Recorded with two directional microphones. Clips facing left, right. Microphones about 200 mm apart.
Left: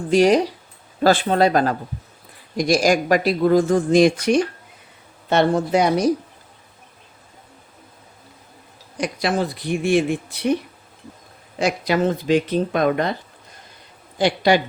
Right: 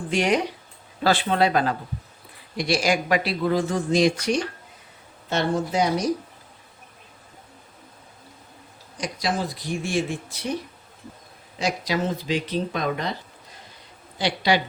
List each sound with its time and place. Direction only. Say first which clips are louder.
0.1 s speech: left 7 dB; 35° left (ahead or behind); by 6.1 s 60° left (ahead or behind)
9.0 s speech: left 5 dB; 60° left (ahead or behind)
11.6 s speech: left 6 dB; 55° left (ahead or behind)
14.2 s speech: left 5 dB; 50° left (ahead or behind)